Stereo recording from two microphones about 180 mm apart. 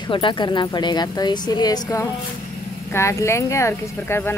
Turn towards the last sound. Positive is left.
turn(degrees=15)  # may be behind; listen again after turning